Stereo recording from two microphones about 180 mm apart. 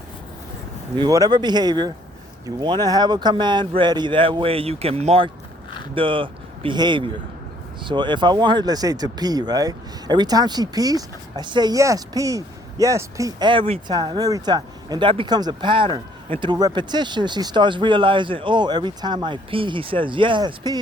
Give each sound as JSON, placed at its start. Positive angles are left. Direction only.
{"t": 0.9, "sound": "speech", "side_deg": -20}